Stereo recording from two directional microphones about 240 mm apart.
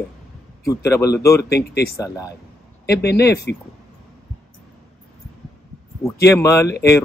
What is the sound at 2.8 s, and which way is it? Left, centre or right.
Speech, left.